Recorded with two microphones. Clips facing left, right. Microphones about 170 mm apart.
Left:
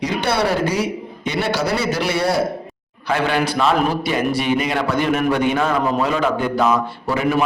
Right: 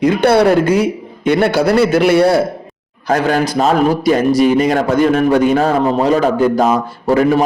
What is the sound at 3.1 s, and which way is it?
A man's voice, 40° right (ahead or behind).